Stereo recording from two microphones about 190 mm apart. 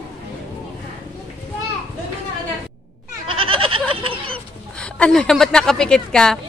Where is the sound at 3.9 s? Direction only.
30° right (ahead or behind).